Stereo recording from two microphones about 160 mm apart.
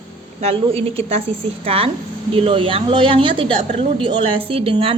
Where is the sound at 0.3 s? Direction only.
40° right (ahead or behind).